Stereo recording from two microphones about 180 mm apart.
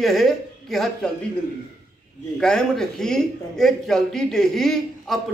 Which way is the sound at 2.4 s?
5° left (ahead or behind).